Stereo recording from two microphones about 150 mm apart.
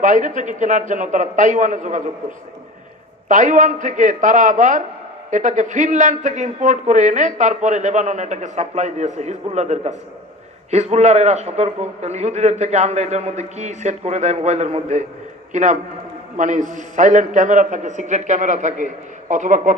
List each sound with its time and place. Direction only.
0.0 s a man's voice: 60° right (ahead or behind)
3.2 s a man's voice: 60° right (ahead or behind)